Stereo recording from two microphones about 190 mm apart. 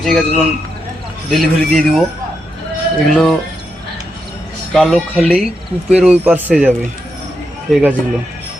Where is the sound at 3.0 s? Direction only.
Centre (ahead or behind).